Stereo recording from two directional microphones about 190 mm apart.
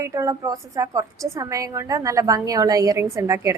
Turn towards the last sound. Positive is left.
turn(degrees=-15)  # may be behind; listen again after turning